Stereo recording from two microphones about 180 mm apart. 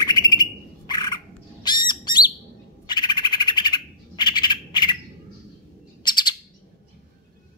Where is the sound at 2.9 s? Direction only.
25° left (ahead or behind).